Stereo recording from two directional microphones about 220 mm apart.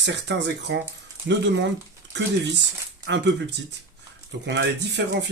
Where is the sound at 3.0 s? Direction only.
50° right (ahead or behind).